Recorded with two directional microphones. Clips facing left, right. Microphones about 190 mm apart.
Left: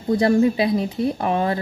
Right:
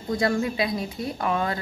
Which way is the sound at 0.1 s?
30° left (ahead or behind).